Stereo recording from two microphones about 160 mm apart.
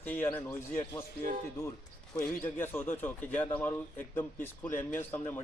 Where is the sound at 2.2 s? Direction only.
10° left (ahead or behind).